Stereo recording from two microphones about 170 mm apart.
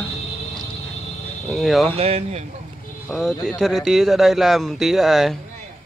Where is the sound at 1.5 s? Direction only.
Centre (ahead or behind).